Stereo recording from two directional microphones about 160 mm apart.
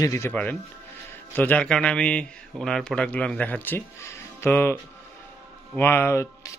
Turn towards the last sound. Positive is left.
turn(degrees=15)  # may be behind; listen again after turning